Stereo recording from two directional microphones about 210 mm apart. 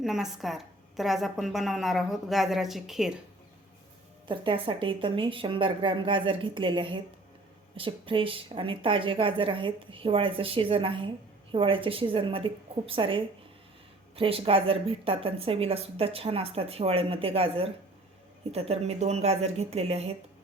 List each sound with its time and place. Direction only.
0.0 s a woman's voice: centre (ahead or behind)
4.3 s a woman's voice: 25° right (ahead or behind)